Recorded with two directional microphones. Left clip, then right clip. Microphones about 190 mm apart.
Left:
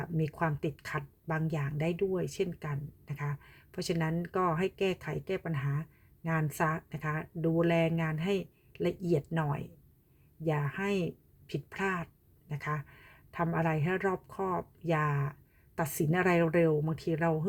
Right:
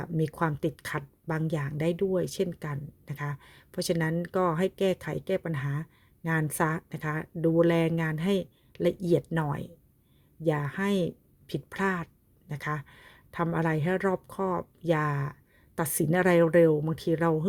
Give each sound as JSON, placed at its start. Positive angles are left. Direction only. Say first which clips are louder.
{"t": 0.2, "sound": "speech", "louder": "right 4 dB", "side_deg": -25}